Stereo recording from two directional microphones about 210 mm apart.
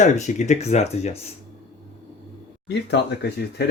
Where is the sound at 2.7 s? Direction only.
55° left (ahead or behind).